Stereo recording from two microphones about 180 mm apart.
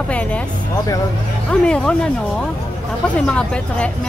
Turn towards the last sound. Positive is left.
turn(degrees=5)  # may be behind; listen again after turning